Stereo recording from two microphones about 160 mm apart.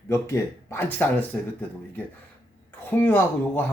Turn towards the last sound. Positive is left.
turn(degrees=10)  # may be behind; listen again after turning